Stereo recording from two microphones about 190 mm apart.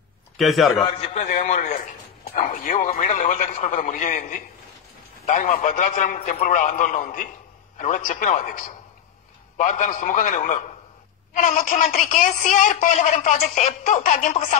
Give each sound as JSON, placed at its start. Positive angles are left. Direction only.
{"t": 0.4, "sound": "a man's voice", "side_deg": 0}
{"t": 0.9, "sound": "a man's voice", "side_deg": 35}